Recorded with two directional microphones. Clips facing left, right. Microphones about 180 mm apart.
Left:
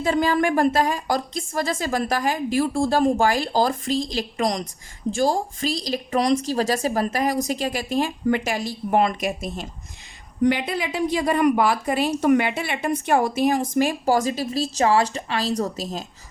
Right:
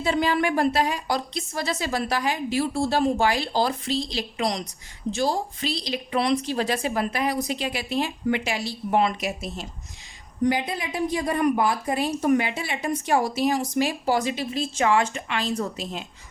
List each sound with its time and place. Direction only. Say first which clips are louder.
0.0 s speech: left 3 dB; 45° left (ahead or behind)
10.4 s speech: left 3 dB; 75° left (ahead or behind); by 16.0 s 40° left (ahead or behind)